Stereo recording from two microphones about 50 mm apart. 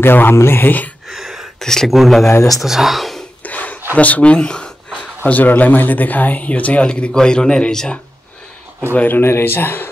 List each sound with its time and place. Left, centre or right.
0.0 s speech: left
1.0 s a sound: centre
1.6 s speech: centre
3.4 s a sound: left
3.9 s a man's voice: left
5.2 s a man's voice: left; by 7.9 s centre
8.9 s speech: left
9.2 s speech: left